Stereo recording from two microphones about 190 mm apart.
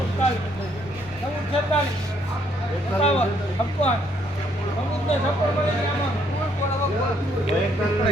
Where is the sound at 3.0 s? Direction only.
35° left (ahead or behind).